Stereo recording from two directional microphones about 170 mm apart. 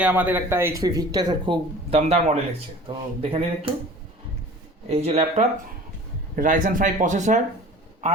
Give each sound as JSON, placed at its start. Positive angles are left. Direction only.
{"t": 0.0, "sound": "speech", "side_deg": -10}
{"t": 2.0, "sound": "speech", "side_deg": -40}
{"t": 4.9, "sound": "speech", "side_deg": -40}
{"t": 6.3, "sound": "speech", "side_deg": -55}